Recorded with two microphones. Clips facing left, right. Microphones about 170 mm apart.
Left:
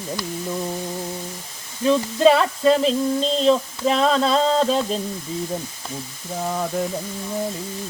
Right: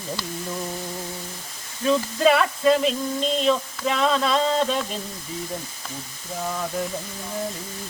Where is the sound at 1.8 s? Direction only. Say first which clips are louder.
Left 4 dB; 25° left (ahead or behind).